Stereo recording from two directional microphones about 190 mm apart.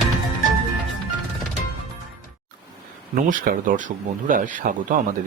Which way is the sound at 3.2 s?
45° right (ahead or behind).